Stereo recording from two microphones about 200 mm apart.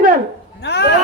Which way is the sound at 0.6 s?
55° left (ahead or behind).